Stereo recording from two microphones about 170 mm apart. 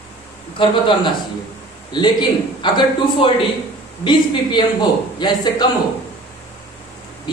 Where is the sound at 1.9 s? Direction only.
25° left (ahead or behind).